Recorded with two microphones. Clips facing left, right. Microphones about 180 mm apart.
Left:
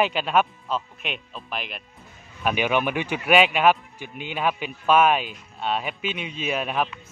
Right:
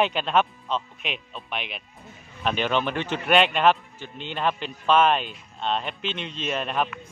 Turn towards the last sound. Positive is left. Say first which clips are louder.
# left 1 dB
turn(degrees=5)  # may be behind; listen again after turning